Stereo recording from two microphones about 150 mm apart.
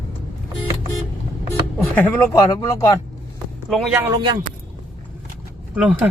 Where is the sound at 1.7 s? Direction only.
10° left (ahead or behind).